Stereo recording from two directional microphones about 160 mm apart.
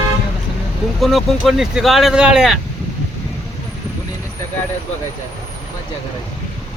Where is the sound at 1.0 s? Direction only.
Centre (ahead or behind).